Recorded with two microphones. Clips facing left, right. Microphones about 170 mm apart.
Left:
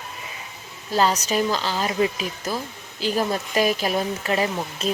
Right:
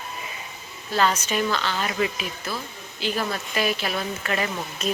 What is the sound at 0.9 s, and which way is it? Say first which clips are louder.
Speech: left 2 dB; 35° left (ahead or behind).